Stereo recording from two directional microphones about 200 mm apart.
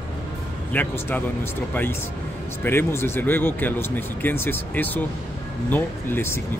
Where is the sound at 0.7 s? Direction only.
10° left (ahead or behind).